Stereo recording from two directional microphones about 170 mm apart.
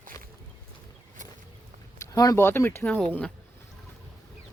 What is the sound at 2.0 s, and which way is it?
Speech, 20° left (ahead or behind).